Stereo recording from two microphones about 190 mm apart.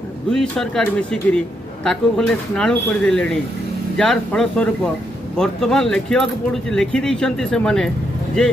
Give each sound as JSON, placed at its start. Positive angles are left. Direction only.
{"t": 0.3, "sound": "speech", "side_deg": 5}